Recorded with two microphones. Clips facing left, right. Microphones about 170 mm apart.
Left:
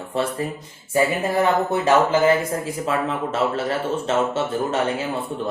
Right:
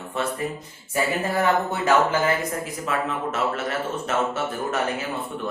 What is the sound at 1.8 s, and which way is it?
Speech, 30° left (ahead or behind).